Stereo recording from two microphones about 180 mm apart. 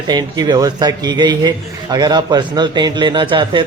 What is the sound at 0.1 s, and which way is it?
A man's voice, 25° right (ahead or behind).